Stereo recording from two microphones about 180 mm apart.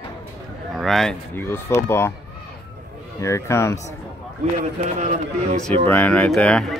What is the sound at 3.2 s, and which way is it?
Speech, 15° left (ahead or behind).